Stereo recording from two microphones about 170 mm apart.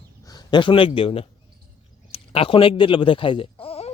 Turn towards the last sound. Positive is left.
turn(degrees=35)  # may be behind; listen again after turning